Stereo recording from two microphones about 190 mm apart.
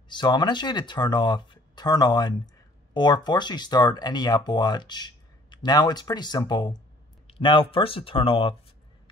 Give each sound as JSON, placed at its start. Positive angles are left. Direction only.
{"t": 0.1, "sound": "speech", "side_deg": 25}